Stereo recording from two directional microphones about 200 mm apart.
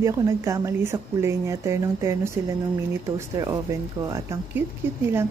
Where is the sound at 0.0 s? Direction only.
15° right (ahead or behind).